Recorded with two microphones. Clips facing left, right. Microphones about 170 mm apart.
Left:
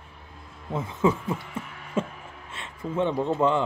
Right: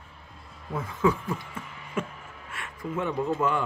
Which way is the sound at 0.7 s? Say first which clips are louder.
Left 1 dB; 20° left (ahead or behind).